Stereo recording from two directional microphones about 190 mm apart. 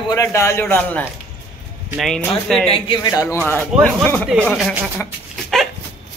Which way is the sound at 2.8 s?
15° left (ahead or behind).